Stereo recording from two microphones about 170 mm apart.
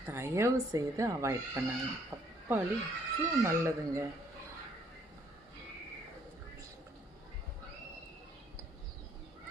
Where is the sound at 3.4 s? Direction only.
15° right (ahead or behind).